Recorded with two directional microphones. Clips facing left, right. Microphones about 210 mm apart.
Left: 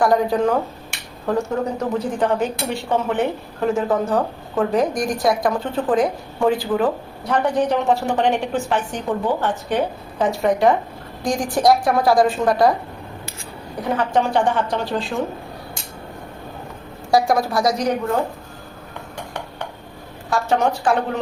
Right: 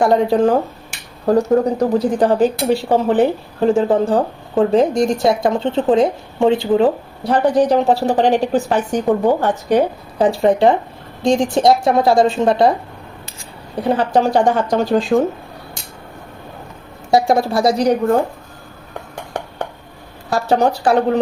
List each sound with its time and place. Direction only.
0.0 s a woman's voice: 25° right (ahead or behind)
13.8 s speech: 35° right (ahead or behind)
17.1 s a woman's voice: 25° right (ahead or behind)
19.3 s dishes: 45° right (ahead or behind)
20.3 s speech: 35° right (ahead or behind)